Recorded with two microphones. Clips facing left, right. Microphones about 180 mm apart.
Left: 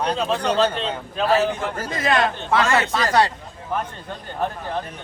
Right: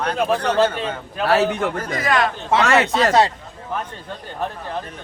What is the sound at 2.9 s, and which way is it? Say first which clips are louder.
Speech: right 3 dB; 25° right (ahead or behind).